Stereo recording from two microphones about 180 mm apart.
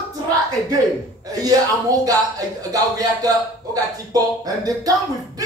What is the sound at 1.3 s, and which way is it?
Speech, 20° right (ahead or behind).